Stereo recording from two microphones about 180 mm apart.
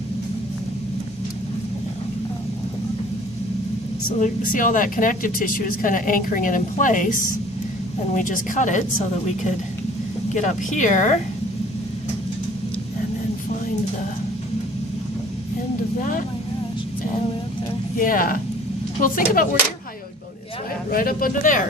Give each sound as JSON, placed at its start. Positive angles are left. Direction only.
{"t": 4.2, "sound": "speech", "side_deg": 45}
{"t": 10.3, "sound": "speech", "side_deg": 45}
{"t": 17.9, "sound": "speech", "side_deg": 50}
{"t": 20.9, "sound": "speech", "side_deg": 50}